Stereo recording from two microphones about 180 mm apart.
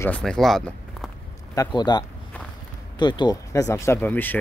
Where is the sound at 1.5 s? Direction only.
20° left (ahead or behind).